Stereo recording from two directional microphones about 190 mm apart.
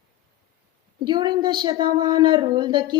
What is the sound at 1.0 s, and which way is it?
A woman's voice, 25° right (ahead or behind).